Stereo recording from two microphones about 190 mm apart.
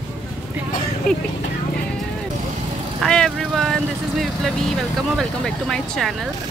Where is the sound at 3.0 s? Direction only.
Centre (ahead or behind).